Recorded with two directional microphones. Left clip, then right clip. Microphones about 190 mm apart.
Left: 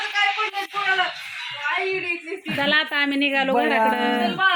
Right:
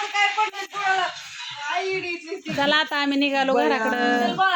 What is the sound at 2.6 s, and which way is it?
A woman's voice, centre (ahead or behind).